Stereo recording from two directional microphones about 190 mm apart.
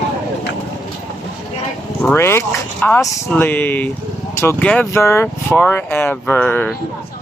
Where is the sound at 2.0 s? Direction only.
10° left (ahead or behind).